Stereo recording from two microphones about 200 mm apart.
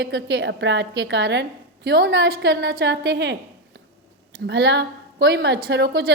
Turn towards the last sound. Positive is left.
turn(degrees=-55)  # may be behind; listen again after turning